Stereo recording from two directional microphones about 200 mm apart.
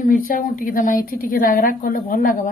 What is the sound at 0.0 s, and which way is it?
A woman's voice, 40° left (ahead or behind).